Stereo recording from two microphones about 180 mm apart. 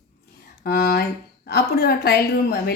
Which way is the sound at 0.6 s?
60° left (ahead or behind).